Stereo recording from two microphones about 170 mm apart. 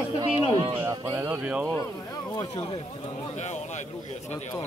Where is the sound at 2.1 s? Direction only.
20° left (ahead or behind).